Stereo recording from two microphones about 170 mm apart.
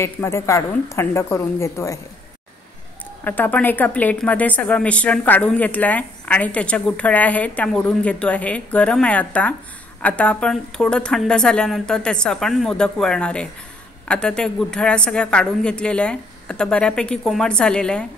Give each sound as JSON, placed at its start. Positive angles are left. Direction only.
{"t": 0.0, "sound": "a woman's voice", "side_deg": 15}
{"t": 3.3, "sound": "a woman's voice", "side_deg": 10}